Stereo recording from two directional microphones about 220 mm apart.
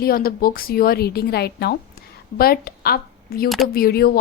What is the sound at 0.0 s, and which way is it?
A woman's voice, 40° left (ahead or behind).